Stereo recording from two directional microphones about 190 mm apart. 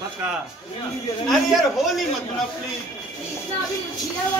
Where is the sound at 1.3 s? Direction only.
Centre (ahead or behind).